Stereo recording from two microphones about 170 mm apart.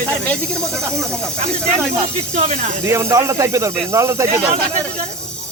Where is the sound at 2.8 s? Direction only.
15° right (ahead or behind).